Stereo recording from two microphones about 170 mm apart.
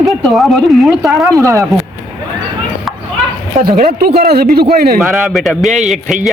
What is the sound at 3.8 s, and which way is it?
Speech, 65° right (ahead or behind).